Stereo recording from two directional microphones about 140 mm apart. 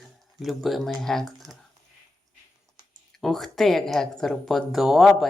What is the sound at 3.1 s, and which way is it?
Speech, centre (ahead or behind).